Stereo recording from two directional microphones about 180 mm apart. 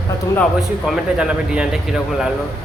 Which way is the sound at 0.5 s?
5° right (ahead or behind).